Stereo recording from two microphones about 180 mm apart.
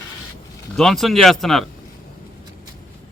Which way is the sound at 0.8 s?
Centre (ahead or behind).